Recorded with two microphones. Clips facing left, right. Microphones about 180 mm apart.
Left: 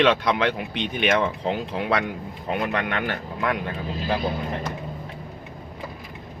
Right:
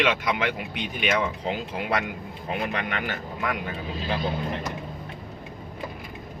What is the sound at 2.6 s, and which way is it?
Speech, 65° left (ahead or behind).